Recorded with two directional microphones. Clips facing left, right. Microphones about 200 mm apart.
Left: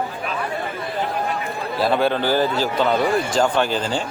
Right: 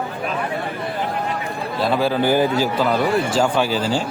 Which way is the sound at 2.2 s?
15° right (ahead or behind).